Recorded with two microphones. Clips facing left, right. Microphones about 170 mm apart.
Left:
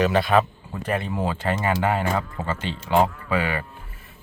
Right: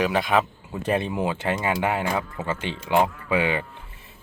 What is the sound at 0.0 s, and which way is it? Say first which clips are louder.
Speech: left 3 dB; 10° right (ahead or behind).